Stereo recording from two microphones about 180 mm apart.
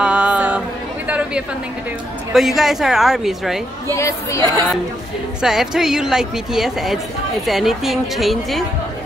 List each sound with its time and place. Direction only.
0.0 s chatter: 5° right (ahead or behind)
2.3 s a woman's voice: centre (ahead or behind)
3.9 s speech: 15° left (ahead or behind)
5.4 s a woman's voice: 5° right (ahead or behind)